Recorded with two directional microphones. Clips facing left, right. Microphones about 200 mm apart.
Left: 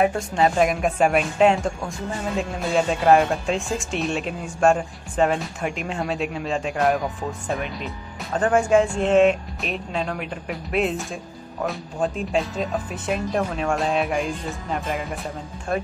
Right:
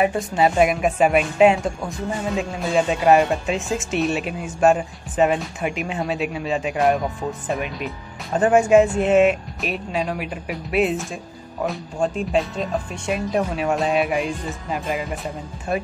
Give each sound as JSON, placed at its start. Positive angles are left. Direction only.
{"t": 0.0, "sound": "speech", "side_deg": -5}